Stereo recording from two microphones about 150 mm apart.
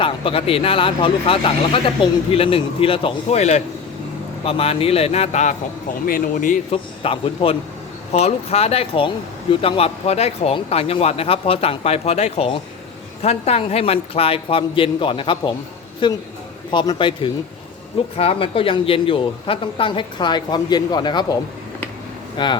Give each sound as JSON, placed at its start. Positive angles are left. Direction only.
{"t": 0.0, "sound": "speech", "side_deg": 40}
{"t": 6.1, "sound": "speech", "side_deg": 65}
{"t": 6.7, "sound": "speech", "side_deg": 40}
{"t": 22.4, "sound": "speech", "side_deg": 30}